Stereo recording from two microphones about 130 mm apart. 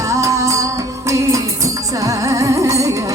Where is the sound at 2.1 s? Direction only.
25° right (ahead or behind).